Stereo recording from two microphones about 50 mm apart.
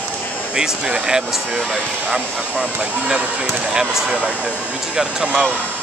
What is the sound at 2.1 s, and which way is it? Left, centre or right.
Speech, right.